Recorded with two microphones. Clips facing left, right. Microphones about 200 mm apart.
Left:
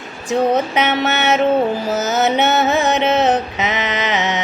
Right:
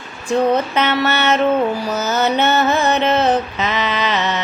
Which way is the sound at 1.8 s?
20° left (ahead or behind).